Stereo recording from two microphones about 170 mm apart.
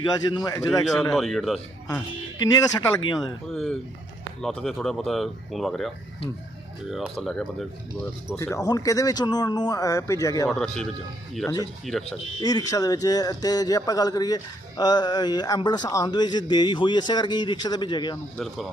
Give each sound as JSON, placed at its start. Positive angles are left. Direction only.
{"t": 0.0, "sound": "a man's voice", "side_deg": 25}
{"t": 1.1, "sound": "speech", "side_deg": 0}
{"t": 2.4, "sound": "a man's voice", "side_deg": 20}
{"t": 3.5, "sound": "speech", "side_deg": 5}
{"t": 6.9, "sound": "speech", "side_deg": 0}
{"t": 8.4, "sound": "a man's voice", "side_deg": 20}
{"t": 10.5, "sound": "speech", "side_deg": 5}
{"t": 11.4, "sound": "a man's voice", "side_deg": 25}
{"t": 18.3, "sound": "speech", "side_deg": 0}